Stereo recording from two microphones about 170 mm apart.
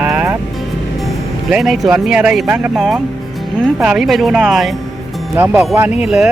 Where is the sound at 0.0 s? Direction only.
10° right (ahead or behind).